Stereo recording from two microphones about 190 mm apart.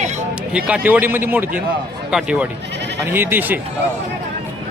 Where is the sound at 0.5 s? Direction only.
5° right (ahead or behind).